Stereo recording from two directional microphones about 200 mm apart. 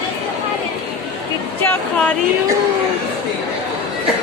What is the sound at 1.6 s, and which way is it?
Speech, 5° left (ahead or behind).